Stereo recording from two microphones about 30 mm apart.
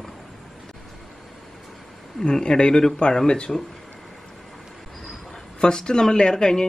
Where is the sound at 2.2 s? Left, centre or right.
Left.